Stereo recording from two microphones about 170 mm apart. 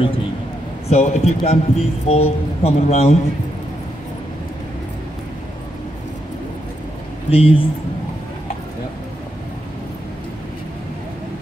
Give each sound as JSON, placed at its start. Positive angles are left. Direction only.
{"t": 0.8, "sound": "a man's voice", "side_deg": 40}
{"t": 7.2, "sound": "a man's voice", "side_deg": 35}